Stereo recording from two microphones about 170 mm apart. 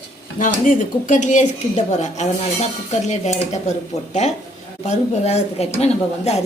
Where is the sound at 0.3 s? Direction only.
50° left (ahead or behind).